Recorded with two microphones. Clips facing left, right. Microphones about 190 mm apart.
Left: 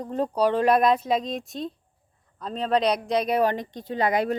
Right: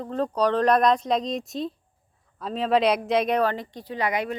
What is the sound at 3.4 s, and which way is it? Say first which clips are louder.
Speech: left 1 dB; 15° left (ahead or behind).